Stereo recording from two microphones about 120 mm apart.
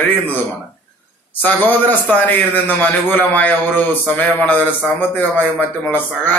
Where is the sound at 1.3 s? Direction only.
15° left (ahead or behind).